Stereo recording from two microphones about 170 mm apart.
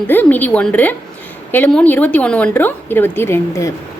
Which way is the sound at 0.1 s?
10° left (ahead or behind).